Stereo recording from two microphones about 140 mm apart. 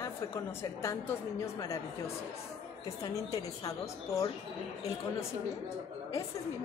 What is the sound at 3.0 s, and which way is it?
A woman's voice, 25° left (ahead or behind).